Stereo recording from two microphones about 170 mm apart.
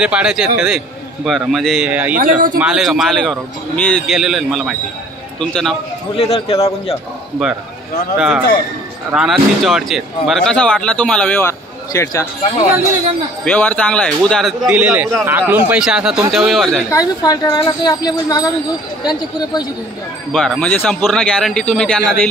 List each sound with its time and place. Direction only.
0.0 s speech: 5° right (ahead or behind)
2.1 s speech: 55° right (ahead or behind)
2.6 s speech: 5° right (ahead or behind)
6.1 s a man's voice: 35° left (ahead or behind)
7.4 s speech: centre (ahead or behind)
9.1 s speech: 5° right (ahead or behind); by 12.3 s 20° left (ahead or behind)
13.5 s speech: 5° left (ahead or behind)
16.9 s a woman's voice: 25° left (ahead or behind)
20.3 s speech: 5° left (ahead or behind)